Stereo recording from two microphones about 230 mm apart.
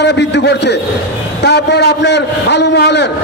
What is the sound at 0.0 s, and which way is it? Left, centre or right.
A man's voice, left.